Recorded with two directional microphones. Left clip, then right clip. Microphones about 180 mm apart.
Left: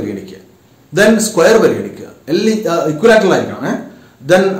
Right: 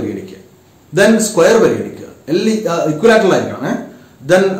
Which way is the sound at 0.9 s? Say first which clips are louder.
Even; 20° left (ahead or behind).